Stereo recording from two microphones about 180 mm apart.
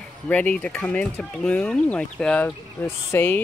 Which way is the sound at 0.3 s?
5° left (ahead or behind).